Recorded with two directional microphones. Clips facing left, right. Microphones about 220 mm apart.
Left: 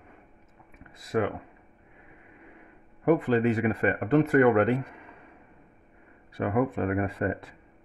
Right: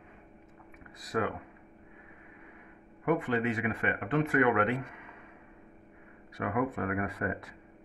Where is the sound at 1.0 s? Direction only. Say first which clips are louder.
Left 5 dB; 25° left (ahead or behind).